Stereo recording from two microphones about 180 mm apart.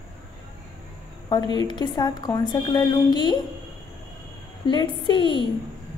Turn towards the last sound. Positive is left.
turn(degrees=25)  # may be behind; listen again after turning